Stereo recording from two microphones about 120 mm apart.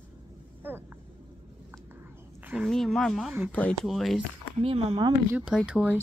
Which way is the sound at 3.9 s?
Centre (ahead or behind).